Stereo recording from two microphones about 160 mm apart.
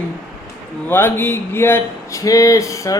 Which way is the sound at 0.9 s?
15° left (ahead or behind).